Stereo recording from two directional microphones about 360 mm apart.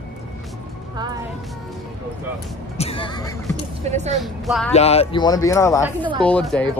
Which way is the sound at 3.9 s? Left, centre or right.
Centre.